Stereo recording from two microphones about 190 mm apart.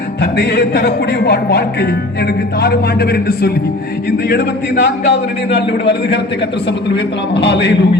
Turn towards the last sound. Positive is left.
turn(degrees=65)  # may be behind; listen again after turning